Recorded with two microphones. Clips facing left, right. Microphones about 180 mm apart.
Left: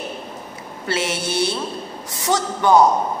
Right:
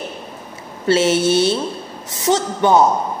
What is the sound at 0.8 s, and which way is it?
Speech, 25° right (ahead or behind).